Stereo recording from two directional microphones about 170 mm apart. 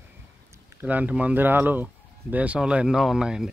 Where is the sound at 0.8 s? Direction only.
10° right (ahead or behind).